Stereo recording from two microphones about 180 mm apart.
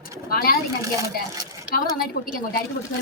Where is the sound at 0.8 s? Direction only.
20° right (ahead or behind).